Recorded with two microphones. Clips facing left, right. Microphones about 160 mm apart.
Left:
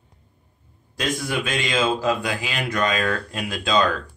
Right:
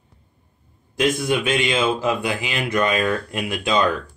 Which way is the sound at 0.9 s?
20° right (ahead or behind).